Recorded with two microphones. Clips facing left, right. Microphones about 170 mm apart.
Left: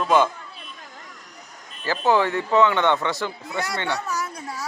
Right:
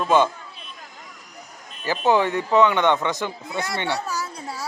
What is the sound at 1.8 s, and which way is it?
Speech, 20° right (ahead or behind).